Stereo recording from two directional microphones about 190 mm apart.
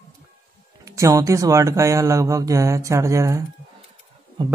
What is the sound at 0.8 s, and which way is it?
Speech, 15° right (ahead or behind).